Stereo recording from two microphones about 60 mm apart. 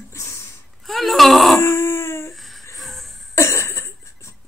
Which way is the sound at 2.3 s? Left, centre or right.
Centre.